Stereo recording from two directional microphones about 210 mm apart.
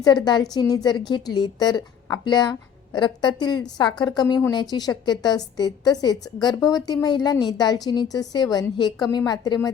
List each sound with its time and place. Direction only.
0.0 s a woman's voice: 20° left (ahead or behind)